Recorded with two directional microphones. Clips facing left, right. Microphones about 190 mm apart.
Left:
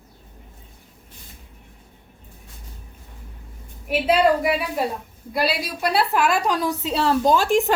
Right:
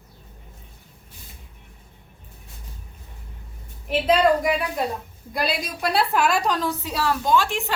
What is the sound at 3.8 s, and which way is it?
A woman's voice, 10° left (ahead or behind).